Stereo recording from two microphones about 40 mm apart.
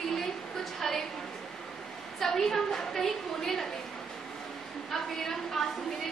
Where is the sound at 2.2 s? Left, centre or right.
Centre.